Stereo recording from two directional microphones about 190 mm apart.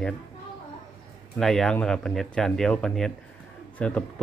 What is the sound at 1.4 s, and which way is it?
A man's voice, centre (ahead or behind).